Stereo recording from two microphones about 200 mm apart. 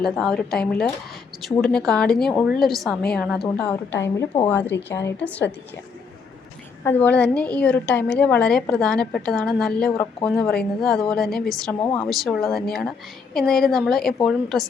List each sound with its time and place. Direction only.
0.0 s a woman's voice: centre (ahead or behind)
6.8 s a woman's voice: 10° left (ahead or behind)
9.9 s a woman's voice: 15° left (ahead or behind)
10.2 s a woman's voice: centre (ahead or behind)